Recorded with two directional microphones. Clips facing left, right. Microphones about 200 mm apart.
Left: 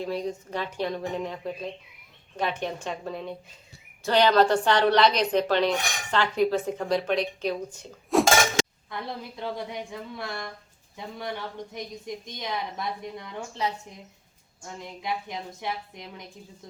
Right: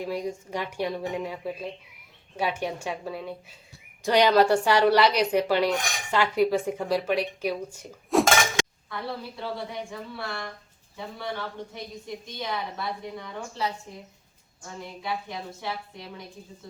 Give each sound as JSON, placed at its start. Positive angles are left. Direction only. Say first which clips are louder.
{"t": 0.0, "sound": "speech", "louder": "even", "side_deg": -10}
{"t": 8.1, "sound": "dishes", "louder": "even", "side_deg": 0}
{"t": 8.9, "sound": "a woman's voice", "louder": "right 1 dB", "side_deg": 20}
{"t": 15.0, "sound": "speech", "louder": "left 1 dB", "side_deg": 20}